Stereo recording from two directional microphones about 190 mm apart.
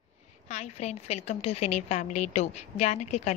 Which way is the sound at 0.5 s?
35° left (ahead or behind).